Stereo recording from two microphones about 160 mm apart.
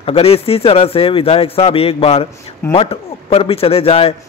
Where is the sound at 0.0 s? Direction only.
40° left (ahead or behind).